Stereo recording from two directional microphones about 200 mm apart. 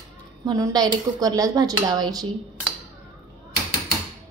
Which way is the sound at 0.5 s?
20° right (ahead or behind).